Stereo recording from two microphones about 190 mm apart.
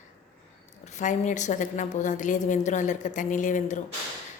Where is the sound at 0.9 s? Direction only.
40° left (ahead or behind).